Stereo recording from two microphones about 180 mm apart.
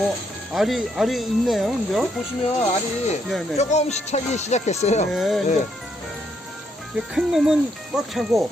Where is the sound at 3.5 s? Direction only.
40° left (ahead or behind).